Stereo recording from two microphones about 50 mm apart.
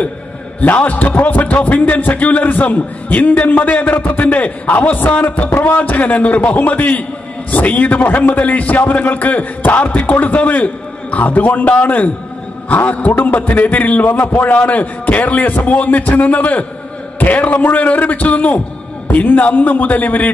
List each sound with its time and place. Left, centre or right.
0.6 s a man's voice: left